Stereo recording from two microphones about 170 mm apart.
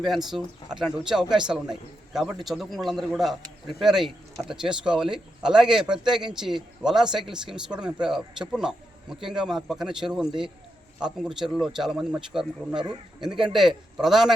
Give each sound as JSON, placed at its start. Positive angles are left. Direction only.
{"t": 0.0, "sound": "a man's voice", "side_deg": 0}
{"t": 12.8, "sound": "speech", "side_deg": -25}
{"t": 13.4, "sound": "a man's voice", "side_deg": 0}